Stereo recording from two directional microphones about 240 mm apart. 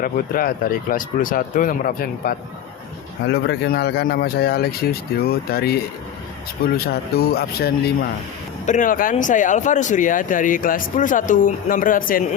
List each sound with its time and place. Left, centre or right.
0.0 s speech: left